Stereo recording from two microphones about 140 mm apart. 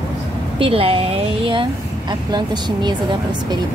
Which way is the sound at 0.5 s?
40° right (ahead or behind).